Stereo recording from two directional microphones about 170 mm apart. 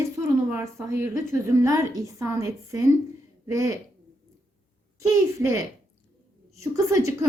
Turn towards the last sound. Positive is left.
turn(degrees=-20)  # may be behind; listen again after turning